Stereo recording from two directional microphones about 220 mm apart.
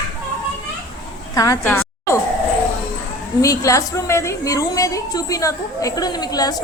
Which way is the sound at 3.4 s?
15° left (ahead or behind).